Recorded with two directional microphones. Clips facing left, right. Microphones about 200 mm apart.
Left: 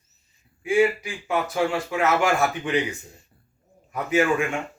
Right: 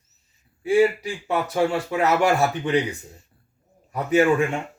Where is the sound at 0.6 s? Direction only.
35° right (ahead or behind).